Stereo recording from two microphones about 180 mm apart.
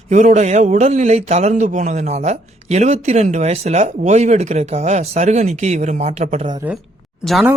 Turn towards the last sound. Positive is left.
turn(degrees=0)  # may be behind; listen again after turning